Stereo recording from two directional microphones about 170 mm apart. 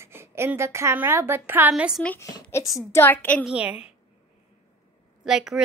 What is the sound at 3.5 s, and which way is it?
Speech, 5° right (ahead or behind).